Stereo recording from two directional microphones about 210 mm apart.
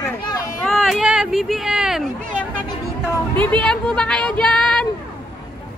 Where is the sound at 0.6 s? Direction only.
Centre (ahead or behind).